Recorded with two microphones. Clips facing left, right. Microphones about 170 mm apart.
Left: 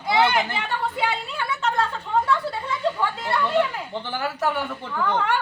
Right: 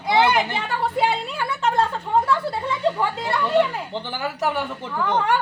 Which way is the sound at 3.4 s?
15° right (ahead or behind).